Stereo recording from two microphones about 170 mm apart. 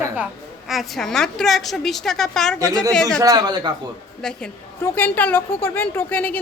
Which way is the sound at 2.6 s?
20° right (ahead or behind).